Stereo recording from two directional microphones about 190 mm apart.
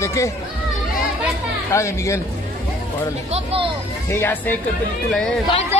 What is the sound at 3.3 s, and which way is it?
Speech, 30° right (ahead or behind).